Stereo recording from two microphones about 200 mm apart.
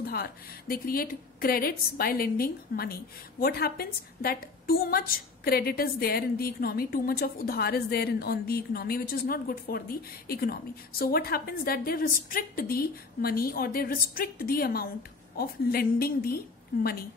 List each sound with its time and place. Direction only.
0.0 s a woman's voice: 50° left (ahead or behind)